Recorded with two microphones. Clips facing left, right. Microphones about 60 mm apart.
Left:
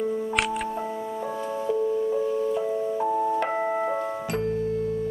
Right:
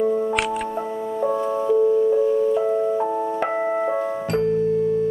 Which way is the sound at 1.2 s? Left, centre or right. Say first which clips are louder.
Right 9 dB; centre.